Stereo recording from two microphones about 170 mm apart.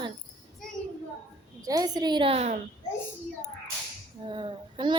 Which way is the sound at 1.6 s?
20° right (ahead or behind).